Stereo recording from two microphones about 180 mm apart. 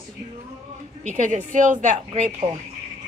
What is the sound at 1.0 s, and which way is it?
Speech, 45° right (ahead or behind).